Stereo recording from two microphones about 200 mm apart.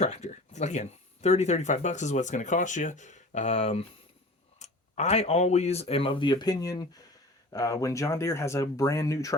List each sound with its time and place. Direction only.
0.0 s speech: 35° left (ahead or behind); by 9.3 s 15° left (ahead or behind)